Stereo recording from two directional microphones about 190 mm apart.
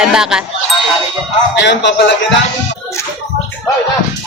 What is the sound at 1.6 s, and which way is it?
Speech, 65° left (ahead or behind).